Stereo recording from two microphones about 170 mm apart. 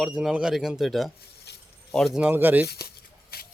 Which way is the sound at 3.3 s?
65° left (ahead or behind).